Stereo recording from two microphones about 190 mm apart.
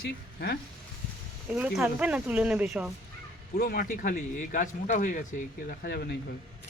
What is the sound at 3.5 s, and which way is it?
Speech, 50° left (ahead or behind).